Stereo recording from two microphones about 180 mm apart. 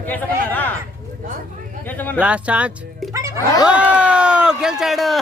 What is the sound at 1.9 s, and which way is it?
Speech, 10° left (ahead or behind).